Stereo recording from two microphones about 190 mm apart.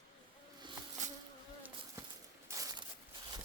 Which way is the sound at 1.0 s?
40° right (ahead or behind).